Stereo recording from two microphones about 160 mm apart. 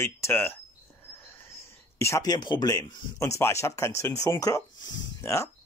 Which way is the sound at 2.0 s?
20° left (ahead or behind).